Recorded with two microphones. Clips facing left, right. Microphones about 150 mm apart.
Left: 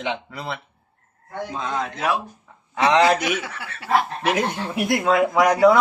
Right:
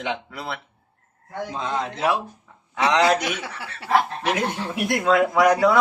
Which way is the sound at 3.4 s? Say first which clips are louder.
Even; 30° right (ahead or behind).